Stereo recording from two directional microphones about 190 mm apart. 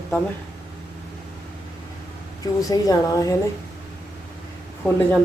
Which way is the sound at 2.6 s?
20° left (ahead or behind).